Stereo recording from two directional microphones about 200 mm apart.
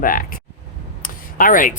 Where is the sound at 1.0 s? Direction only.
45° left (ahead or behind).